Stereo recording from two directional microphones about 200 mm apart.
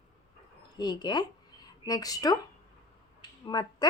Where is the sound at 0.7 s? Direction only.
20° left (ahead or behind).